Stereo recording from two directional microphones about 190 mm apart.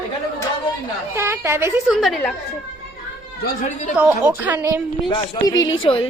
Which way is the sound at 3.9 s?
5° right (ahead or behind).